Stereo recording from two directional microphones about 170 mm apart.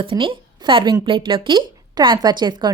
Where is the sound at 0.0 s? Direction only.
30° right (ahead or behind).